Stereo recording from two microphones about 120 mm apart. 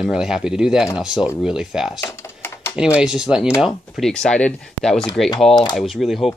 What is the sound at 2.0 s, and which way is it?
Typing, 20° left (ahead or behind).